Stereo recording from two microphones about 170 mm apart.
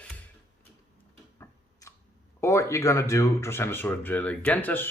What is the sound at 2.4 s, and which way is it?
Speech, 15° left (ahead or behind).